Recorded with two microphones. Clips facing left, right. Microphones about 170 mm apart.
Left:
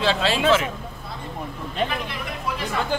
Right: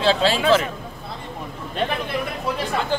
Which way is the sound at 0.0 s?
35° right (ahead or behind).